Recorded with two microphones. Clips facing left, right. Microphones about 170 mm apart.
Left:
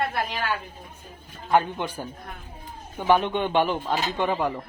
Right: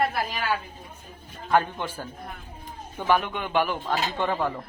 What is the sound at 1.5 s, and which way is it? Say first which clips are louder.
Speech: left 1 dB; 15° left (ahead or behind).